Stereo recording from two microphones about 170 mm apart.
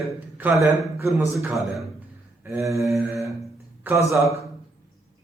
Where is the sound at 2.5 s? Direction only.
15° right (ahead or behind).